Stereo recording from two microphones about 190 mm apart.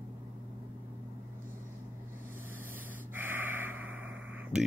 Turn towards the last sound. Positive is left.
turn(degrees=-10)  # may be behind; listen again after turning